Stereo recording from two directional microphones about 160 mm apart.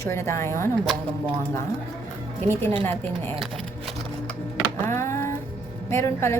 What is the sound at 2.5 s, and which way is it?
Speech, 15° left (ahead or behind).